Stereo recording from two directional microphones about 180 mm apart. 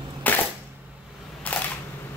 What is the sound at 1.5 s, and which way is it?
Single-lens reflex camera, 10° left (ahead or behind).